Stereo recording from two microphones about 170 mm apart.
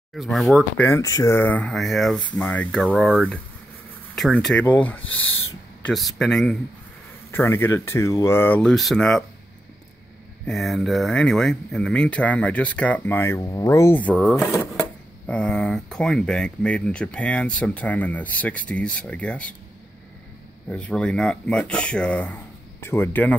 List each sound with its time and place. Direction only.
0.1 s speech: centre (ahead or behind)
0.8 s speech: 20° left (ahead or behind)
2.9 s speech: 5° right (ahead or behind)
4.1 s speech: 5° left (ahead or behind)
7.2 s speech: 15° left (ahead or behind)
10.4 s speech: centre (ahead or behind)
20.6 s speech: 5° left (ahead or behind)